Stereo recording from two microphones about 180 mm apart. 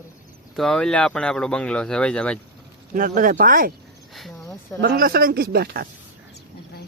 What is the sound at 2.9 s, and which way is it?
Speech, 50° right (ahead or behind).